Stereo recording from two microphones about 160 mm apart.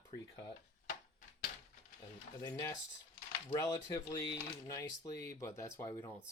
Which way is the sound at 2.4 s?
20° left (ahead or behind).